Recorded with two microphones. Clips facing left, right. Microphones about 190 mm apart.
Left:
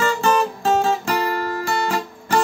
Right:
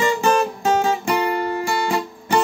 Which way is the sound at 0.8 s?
15° right (ahead or behind).